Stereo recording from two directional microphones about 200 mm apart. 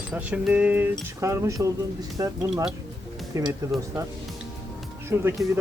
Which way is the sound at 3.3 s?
15° right (ahead or behind).